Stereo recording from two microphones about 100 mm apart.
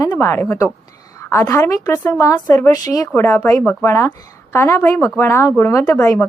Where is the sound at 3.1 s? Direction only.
25° left (ahead or behind).